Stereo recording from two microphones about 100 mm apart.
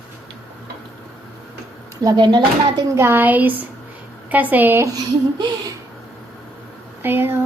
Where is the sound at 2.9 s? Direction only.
25° right (ahead or behind).